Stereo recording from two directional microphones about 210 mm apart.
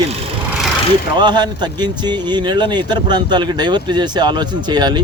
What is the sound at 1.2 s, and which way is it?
Speech, 20° right (ahead or behind).